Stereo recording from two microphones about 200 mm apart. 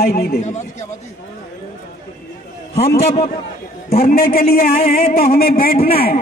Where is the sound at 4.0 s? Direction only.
50° left (ahead or behind).